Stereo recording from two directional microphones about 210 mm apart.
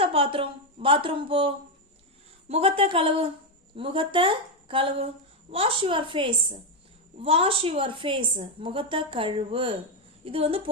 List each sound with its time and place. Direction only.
0.0 s a woman's voice: 25° right (ahead or behind)